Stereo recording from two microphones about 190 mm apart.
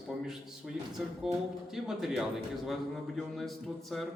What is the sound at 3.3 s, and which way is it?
Speech, centre (ahead or behind).